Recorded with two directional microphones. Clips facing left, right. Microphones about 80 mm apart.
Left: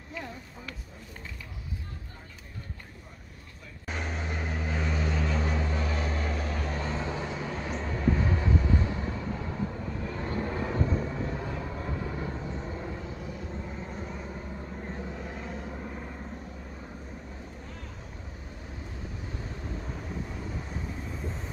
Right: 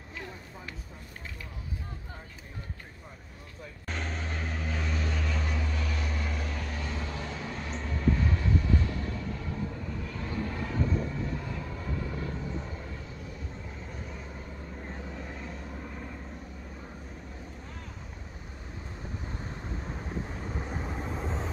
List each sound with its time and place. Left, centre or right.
3.8 s vehicle: centre
14.9 s vehicle: centre